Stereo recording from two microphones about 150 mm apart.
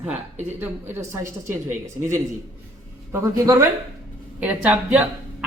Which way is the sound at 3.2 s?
20° right (ahead or behind).